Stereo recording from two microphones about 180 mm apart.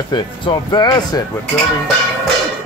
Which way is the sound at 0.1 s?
25° left (ahead or behind).